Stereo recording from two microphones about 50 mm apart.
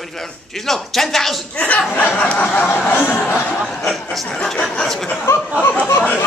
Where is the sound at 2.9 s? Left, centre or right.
Left.